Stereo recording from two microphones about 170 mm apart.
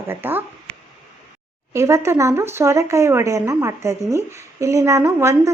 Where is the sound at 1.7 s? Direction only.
15° right (ahead or behind).